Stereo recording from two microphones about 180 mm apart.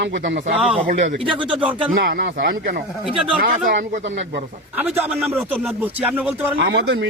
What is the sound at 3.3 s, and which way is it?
Speech, 50° right (ahead or behind).